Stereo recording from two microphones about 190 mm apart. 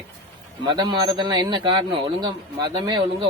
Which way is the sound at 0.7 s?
25° right (ahead or behind).